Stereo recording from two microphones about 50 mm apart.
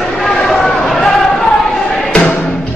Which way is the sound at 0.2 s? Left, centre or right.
Centre.